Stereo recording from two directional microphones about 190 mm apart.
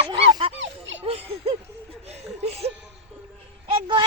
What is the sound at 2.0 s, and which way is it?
Laughter, 35° right (ahead or behind).